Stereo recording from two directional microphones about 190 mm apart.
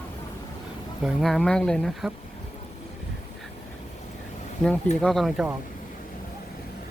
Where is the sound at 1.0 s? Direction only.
Centre (ahead or behind).